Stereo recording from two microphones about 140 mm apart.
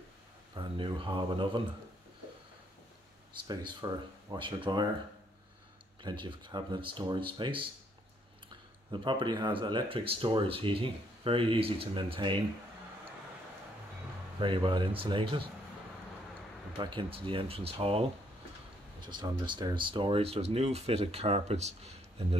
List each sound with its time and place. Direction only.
0.6 s speech: 35° right (ahead or behind)
3.4 s speech: 30° right (ahead or behind)
6.0 s speech: 35° right (ahead or behind)
8.9 s speech: 35° right (ahead or behind)
14.4 s speech: 35° right (ahead or behind)
16.7 s speech: 35° right (ahead or behind)
18.9 s speech: 35° right (ahead or behind); by 22.4 s 50° right (ahead or behind)